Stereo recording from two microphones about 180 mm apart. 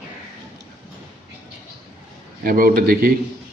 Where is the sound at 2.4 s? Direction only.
55° right (ahead or behind).